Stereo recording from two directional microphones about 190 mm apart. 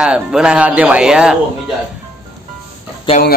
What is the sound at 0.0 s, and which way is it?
A man's voice, 5° right (ahead or behind).